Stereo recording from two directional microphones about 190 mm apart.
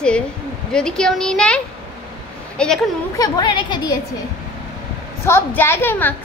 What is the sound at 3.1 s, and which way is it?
Speech, 20° left (ahead or behind).